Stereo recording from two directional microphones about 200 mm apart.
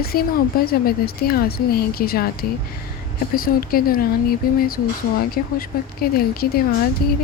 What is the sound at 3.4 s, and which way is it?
Speech, 45° left (ahead or behind).